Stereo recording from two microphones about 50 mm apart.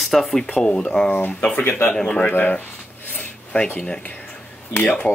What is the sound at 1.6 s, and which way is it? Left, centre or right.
Speech, left.